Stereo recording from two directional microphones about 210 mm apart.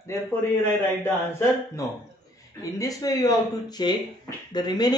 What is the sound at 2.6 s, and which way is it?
Speech, 15° left (ahead or behind).